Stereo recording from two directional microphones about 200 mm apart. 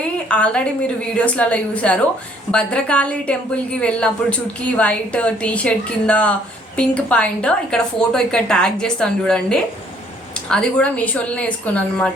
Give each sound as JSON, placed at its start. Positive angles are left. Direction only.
{"t": 0.0, "sound": "a woman's voice", "side_deg": 5}